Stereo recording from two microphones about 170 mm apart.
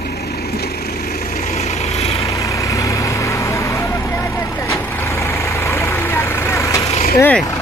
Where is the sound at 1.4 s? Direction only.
40° left (ahead or behind).